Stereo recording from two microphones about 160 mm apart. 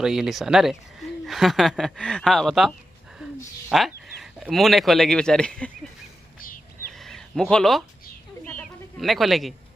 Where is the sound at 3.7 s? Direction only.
Centre (ahead or behind).